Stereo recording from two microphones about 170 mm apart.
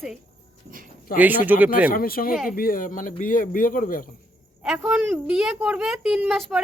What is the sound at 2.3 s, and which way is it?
Speech, centre (ahead or behind).